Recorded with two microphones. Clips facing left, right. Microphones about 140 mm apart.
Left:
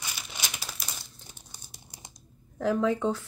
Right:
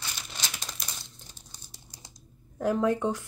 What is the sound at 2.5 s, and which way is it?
Speech, 15° right (ahead or behind).